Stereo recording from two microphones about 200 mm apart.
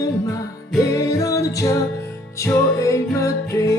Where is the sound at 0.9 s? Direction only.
15° left (ahead or behind).